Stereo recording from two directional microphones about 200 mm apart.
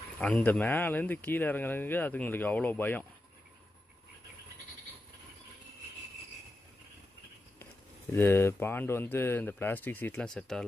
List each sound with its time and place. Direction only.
0.2 s speech: 5° left (ahead or behind)
8.1 s speech: 10° left (ahead or behind)